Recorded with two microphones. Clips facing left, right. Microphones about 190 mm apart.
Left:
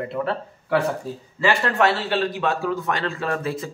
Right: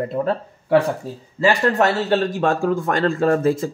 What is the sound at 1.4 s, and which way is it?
Speech, 40° right (ahead or behind).